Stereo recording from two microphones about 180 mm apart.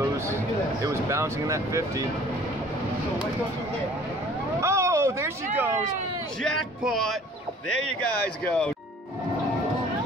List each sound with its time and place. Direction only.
0.8 s speech: 15° right (ahead or behind)
4.6 s a sound: 15° right (ahead or behind)
6.4 s speech: centre (ahead or behind)
8.5 s speech: 5° left (ahead or behind)